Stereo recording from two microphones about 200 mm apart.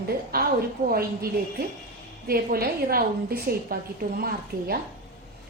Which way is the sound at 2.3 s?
50° right (ahead or behind).